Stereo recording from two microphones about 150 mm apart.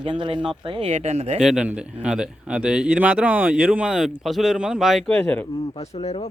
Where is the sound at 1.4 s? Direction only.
5° right (ahead or behind).